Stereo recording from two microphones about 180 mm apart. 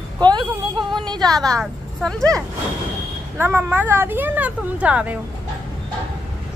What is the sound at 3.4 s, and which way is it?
Speech, 10° right (ahead or behind).